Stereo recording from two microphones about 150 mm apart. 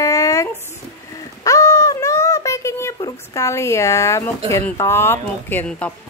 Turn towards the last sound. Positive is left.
turn(degrees=15)  # may be behind; listen again after turning